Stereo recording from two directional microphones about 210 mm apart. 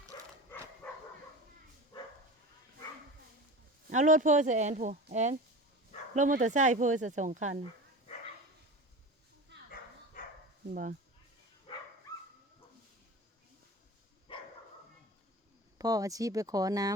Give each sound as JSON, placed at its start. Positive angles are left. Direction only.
{"t": 0.1, "sound": "dog", "side_deg": 20}
{"t": 3.8, "sound": "speech", "side_deg": -35}
{"t": 10.2, "sound": "dog", "side_deg": 40}
{"t": 11.7, "sound": "dog", "side_deg": 25}
{"t": 14.3, "sound": "dog", "side_deg": 25}
{"t": 15.8, "sound": "speech", "side_deg": -15}